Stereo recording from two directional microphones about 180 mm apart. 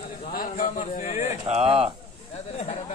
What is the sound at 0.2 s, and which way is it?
A man's voice, 50° left (ahead or behind).